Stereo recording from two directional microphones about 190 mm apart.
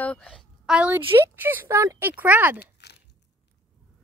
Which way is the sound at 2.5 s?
60° left (ahead or behind).